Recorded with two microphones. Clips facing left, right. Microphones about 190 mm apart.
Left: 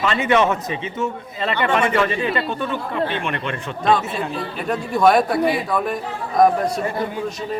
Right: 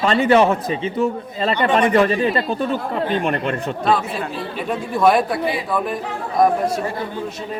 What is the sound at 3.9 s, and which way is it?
Speech, 5° right (ahead or behind).